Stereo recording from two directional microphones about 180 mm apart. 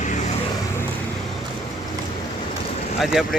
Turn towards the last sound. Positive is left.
turn(degrees=0)  # may be behind; listen again after turning